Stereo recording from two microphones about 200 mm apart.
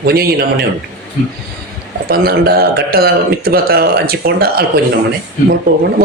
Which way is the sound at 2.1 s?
50° right (ahead or behind).